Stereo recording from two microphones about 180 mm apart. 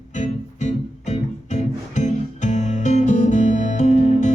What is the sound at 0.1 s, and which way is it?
Music, 40° left (ahead or behind).